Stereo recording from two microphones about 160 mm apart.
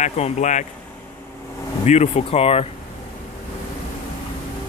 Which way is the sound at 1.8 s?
45° left (ahead or behind).